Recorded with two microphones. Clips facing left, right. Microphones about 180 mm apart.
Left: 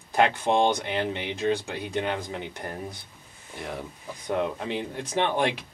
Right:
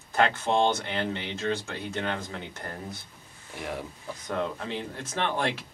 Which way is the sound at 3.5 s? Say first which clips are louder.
Even; centre (ahead or behind).